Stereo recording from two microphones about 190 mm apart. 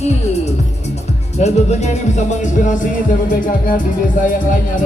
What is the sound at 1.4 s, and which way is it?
Speech, 35° left (ahead or behind).